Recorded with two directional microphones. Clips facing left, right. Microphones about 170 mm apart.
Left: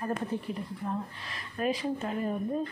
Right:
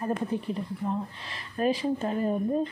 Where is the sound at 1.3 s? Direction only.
30° right (ahead or behind).